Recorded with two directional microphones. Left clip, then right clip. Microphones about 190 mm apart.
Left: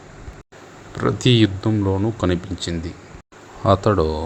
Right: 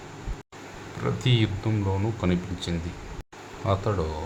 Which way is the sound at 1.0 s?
35° left (ahead or behind).